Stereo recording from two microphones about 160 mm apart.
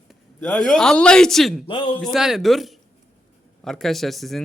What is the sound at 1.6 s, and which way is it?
Speech, 30° left (ahead or behind).